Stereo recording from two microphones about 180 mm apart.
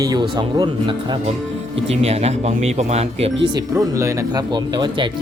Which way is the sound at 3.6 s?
15° right (ahead or behind).